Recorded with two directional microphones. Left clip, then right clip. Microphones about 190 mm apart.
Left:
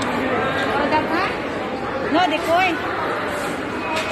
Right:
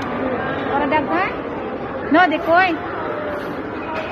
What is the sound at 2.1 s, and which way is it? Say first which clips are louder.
Speech: right 4 dB; 25° right (ahead or behind).